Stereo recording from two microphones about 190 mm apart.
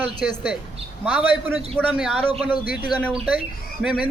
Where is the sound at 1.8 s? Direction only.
5° right (ahead or behind).